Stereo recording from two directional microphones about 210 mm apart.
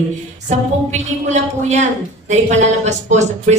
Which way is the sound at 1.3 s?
35° right (ahead or behind).